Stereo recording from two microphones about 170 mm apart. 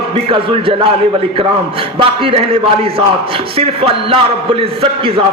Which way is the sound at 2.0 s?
30° right (ahead or behind).